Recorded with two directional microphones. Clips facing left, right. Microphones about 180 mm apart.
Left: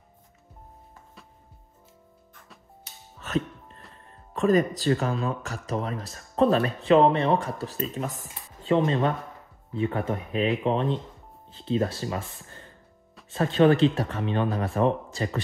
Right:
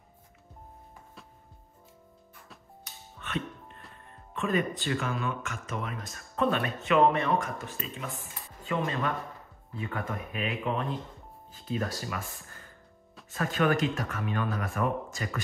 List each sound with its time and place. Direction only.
2.3 s music: centre (ahead or behind)
2.8 s music: 40° left (ahead or behind)
3.9 s speech: 35° left (ahead or behind)